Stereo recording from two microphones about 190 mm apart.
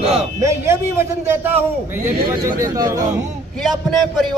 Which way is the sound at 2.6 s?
15° right (ahead or behind).